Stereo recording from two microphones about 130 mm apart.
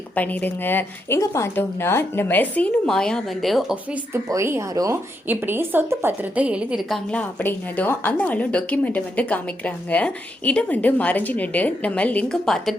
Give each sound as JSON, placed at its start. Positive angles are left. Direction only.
{"t": 0.2, "sound": "a woman's voice", "side_deg": 15}
{"t": 4.1, "sound": "a woman's voice", "side_deg": -20}
{"t": 7.1, "sound": "a woman's voice", "side_deg": 10}